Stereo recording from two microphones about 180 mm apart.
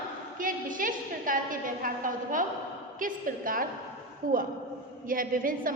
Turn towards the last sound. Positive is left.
turn(degrees=-50)  # may be behind; listen again after turning